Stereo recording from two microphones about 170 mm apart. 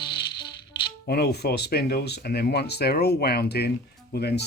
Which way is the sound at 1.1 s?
70° left (ahead or behind).